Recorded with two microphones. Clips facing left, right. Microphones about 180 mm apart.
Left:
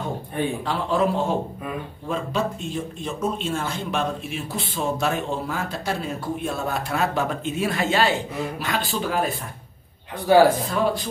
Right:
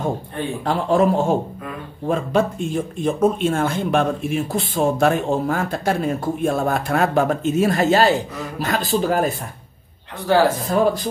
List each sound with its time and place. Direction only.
0.7 s speech: 45° right (ahead or behind)
10.2 s speech: 15° left (ahead or behind)